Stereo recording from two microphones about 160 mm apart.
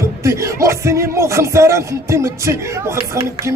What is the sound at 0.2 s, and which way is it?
Music, 20° right (ahead or behind).